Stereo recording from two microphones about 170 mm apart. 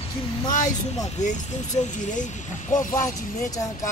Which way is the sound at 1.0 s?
45° left (ahead or behind).